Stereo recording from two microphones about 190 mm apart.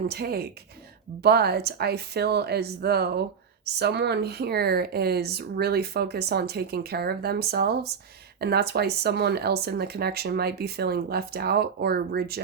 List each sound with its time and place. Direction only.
0.1 s speech: 55° right (ahead or behind)